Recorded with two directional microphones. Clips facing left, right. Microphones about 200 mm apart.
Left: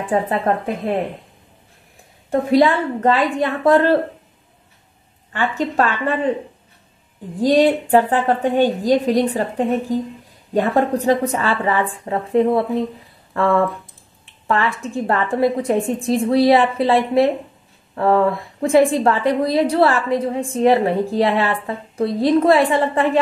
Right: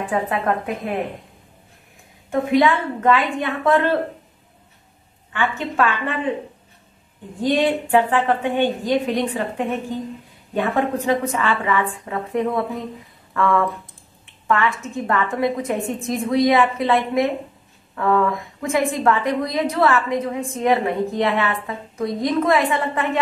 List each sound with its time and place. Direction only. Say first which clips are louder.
0.1 s a woman's voice: left 4 dB; 30° left (ahead or behind)
2.5 s a woman's voice: left 3 dB; 35° left (ahead or behind)
5.3 s a woman's voice: left 3 dB; 40° left (ahead or behind)
7.4 s a woman's voice: left 5 dB; 35° left (ahead or behind)